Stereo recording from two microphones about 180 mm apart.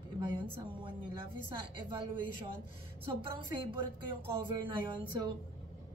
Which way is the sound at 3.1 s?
30° right (ahead or behind).